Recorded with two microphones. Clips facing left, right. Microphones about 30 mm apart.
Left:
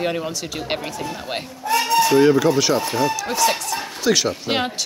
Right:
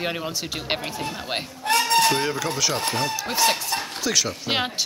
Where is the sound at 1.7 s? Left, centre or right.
Right.